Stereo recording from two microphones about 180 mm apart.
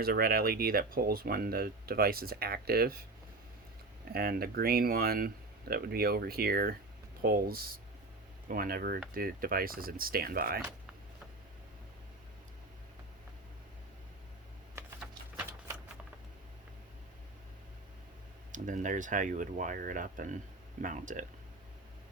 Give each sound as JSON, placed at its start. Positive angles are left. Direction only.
{"t": 0.0, "sound": "speech", "side_deg": -55}
{"t": 4.1, "sound": "speech", "side_deg": -60}
{"t": 15.4, "sound": "shuffling cards", "side_deg": -15}
{"t": 18.5, "sound": "speech", "side_deg": -45}